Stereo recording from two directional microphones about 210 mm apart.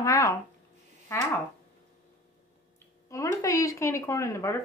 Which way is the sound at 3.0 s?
15° left (ahead or behind).